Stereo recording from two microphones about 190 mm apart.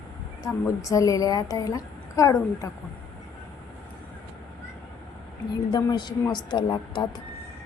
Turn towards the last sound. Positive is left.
turn(degrees=25)  # may be behind; listen again after turning